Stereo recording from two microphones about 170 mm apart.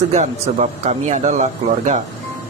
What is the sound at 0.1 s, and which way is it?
Speech, 40° right (ahead or behind).